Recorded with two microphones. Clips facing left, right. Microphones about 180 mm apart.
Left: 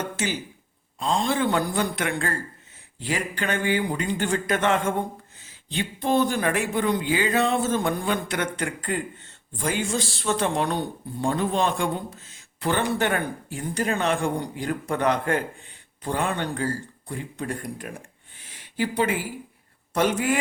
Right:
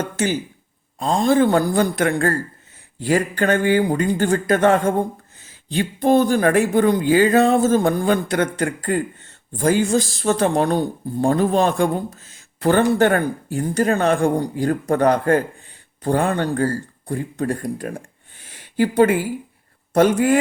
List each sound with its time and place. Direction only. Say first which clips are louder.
0.9 s speech: right 8 dB; 45° right (ahead or behind)
18.4 s a sound: right 8 dB; 50° right (ahead or behind)
19.9 s speech: right 8 dB; 45° right (ahead or behind)